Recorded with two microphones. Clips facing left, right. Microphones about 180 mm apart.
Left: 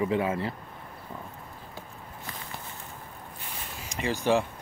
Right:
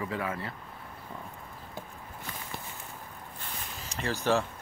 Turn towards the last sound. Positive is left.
turn(degrees=15)  # may be behind; listen again after turning